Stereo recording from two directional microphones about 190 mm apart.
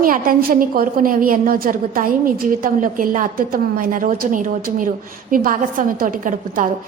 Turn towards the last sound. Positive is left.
turn(degrees=-45)  # may be behind; listen again after turning